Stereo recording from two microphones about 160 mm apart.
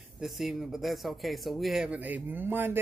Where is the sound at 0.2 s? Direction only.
Centre (ahead or behind).